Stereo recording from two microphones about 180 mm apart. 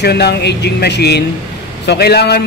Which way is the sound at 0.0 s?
65° left (ahead or behind).